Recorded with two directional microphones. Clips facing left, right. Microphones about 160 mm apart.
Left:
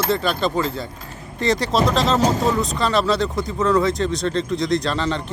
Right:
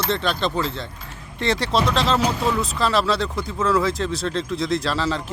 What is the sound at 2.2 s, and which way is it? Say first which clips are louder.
Speech: left 3 dB; 40° left (ahead or behind).